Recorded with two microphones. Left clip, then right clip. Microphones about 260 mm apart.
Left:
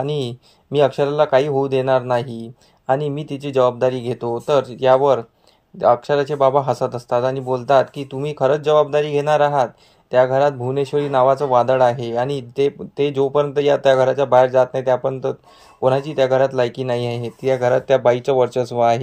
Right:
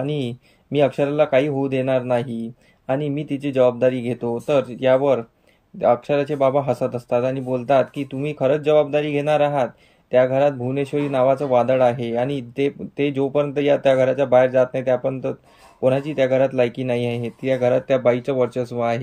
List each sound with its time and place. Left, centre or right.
0.0 s speech: centre